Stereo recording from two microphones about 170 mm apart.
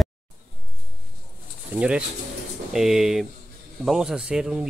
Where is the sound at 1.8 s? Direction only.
5° right (ahead or behind).